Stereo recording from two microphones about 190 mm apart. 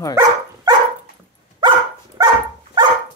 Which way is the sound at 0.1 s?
15° right (ahead or behind).